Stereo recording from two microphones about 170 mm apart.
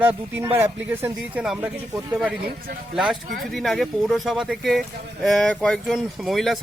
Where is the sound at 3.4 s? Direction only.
Centre (ahead or behind).